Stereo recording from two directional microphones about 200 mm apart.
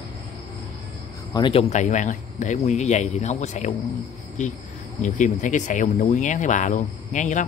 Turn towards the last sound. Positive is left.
turn(degrees=40)  # may be behind; listen again after turning